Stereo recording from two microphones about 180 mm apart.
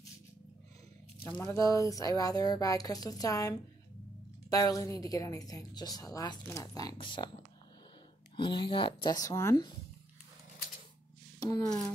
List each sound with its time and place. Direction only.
1.2 s speech: 20° left (ahead or behind)
8.4 s speech: 25° left (ahead or behind)
11.3 s a sound: 20° left (ahead or behind)